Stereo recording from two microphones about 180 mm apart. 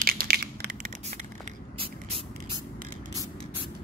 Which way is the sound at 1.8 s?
30° right (ahead or behind).